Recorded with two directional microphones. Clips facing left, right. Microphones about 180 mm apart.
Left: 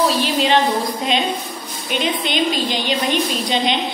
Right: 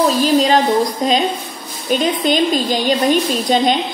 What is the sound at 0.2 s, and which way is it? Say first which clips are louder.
A woman's voice: right 4 dB; 40° right (ahead or behind).